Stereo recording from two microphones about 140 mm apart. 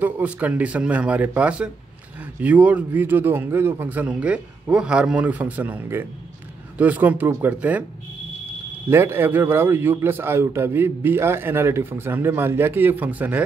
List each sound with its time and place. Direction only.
0.0 s a man's voice: 10° right (ahead or behind)
8.9 s a man's voice: 15° right (ahead or behind)